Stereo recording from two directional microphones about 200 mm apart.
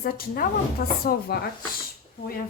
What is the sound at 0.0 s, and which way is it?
Speech, 45° left (ahead or behind).